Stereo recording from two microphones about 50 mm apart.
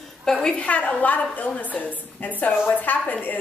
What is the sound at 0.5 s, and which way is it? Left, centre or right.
A woman's voice, left.